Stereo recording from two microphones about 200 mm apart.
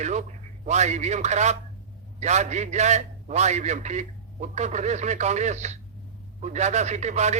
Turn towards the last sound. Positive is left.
turn(degrees=-35)  # may be behind; listen again after turning